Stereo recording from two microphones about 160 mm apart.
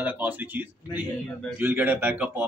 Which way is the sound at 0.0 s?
10° right (ahead or behind).